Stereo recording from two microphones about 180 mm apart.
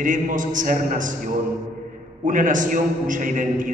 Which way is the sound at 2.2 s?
45° right (ahead or behind).